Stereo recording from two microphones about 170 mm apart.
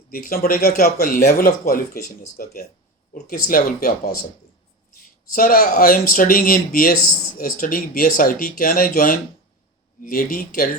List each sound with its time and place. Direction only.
0.1 s speech: 60° left (ahead or behind)
5.3 s speech: 60° left (ahead or behind)